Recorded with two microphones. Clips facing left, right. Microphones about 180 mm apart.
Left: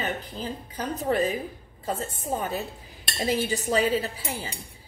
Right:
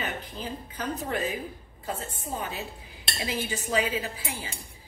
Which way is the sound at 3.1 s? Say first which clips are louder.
Left 6 dB; 40° left (ahead or behind).